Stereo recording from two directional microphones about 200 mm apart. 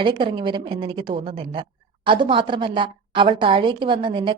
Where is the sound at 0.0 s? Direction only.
25° right (ahead or behind).